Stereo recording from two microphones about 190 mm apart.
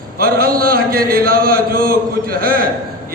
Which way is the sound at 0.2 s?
50° right (ahead or behind).